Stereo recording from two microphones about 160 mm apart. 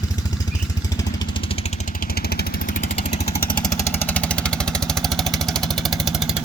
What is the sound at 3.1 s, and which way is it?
Vehicle, 40° left (ahead or behind).